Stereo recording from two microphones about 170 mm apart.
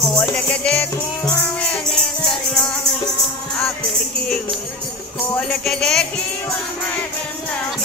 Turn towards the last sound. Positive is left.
turn(degrees=5)  # may be behind; listen again after turning